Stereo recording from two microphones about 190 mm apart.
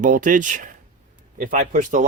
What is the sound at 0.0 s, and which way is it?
Speech, 45° right (ahead or behind).